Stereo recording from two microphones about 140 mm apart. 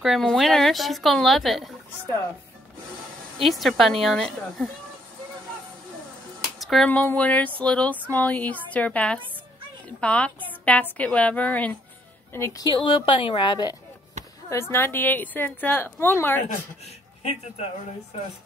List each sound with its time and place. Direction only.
0.0 s speech: centre (ahead or behind)
3.4 s speech: centre (ahead or behind)
6.6 s a sound: centre (ahead or behind)
6.9 s a woman's voice: 10° left (ahead or behind)
12.6 s a woman's voice: 35° left (ahead or behind)
14.5 s a woman's voice: 15° left (ahead or behind)
16.4 s a man's voice: 50° left (ahead or behind)